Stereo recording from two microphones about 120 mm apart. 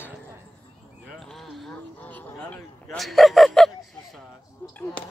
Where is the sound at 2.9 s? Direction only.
Centre (ahead or behind).